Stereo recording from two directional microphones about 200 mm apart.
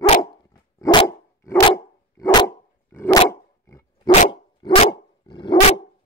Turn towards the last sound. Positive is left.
turn(degrees=25)  # may be behind; listen again after turning